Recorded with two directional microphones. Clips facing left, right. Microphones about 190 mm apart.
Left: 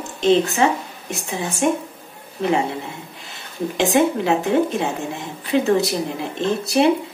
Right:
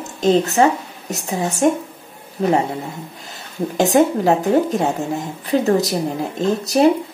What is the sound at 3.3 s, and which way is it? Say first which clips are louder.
Speech: right 1 dB; 40° right (ahead or behind).